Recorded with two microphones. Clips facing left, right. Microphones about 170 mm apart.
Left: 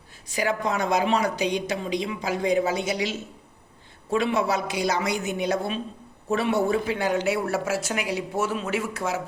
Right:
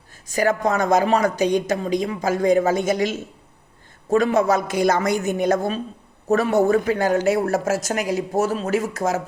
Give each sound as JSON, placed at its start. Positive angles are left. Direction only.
{"t": 0.3, "sound": "speech", "side_deg": -45}